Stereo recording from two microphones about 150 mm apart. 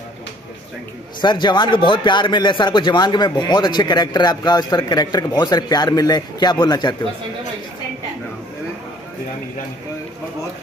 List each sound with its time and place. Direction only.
1.2 s a man's voice: 30° left (ahead or behind)